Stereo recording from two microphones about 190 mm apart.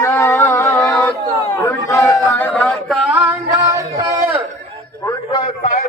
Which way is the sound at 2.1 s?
15° left (ahead or behind).